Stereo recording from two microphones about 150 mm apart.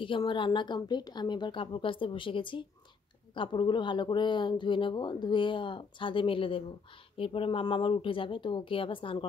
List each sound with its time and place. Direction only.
0.0 s speech: 35° left (ahead or behind)